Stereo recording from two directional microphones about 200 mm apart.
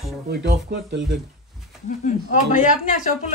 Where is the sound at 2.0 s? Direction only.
40° left (ahead or behind).